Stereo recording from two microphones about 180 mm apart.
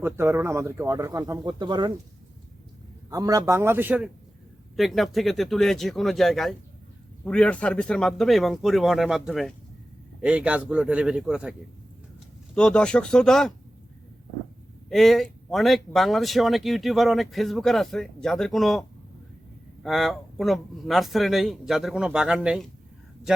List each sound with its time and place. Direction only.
0.0 s speech: 15° right (ahead or behind)
3.1 s speech: 20° right (ahead or behind)
12.5 s speech: 5° left (ahead or behind)
14.8 s speech: centre (ahead or behind)